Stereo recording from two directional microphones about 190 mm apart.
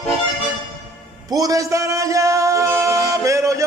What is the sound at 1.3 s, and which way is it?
Music, 20° right (ahead or behind).